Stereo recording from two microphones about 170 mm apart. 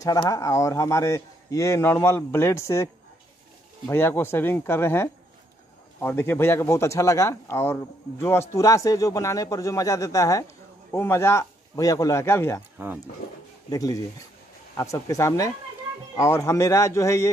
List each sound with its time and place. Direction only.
0.0 s speech: 20° left (ahead or behind)
12.7 s speech: 10° right (ahead or behind)
13.7 s speech: 20° left (ahead or behind)